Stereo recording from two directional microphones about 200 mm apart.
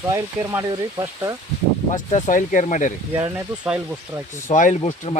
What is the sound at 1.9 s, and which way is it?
Speech, 35° left (ahead or behind).